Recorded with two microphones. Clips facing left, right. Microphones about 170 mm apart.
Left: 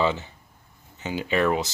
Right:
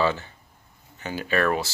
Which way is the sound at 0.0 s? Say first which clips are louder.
Even; 20° left (ahead or behind).